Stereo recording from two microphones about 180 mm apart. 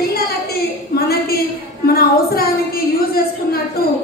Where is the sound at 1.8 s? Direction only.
55° left (ahead or behind).